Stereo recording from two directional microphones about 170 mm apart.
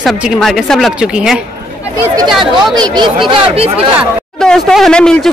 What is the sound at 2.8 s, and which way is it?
Speech, 25° right (ahead or behind).